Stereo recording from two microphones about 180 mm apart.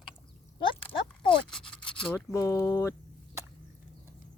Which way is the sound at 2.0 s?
15° left (ahead or behind).